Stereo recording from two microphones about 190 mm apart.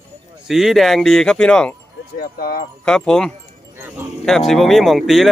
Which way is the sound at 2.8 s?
5° left (ahead or behind).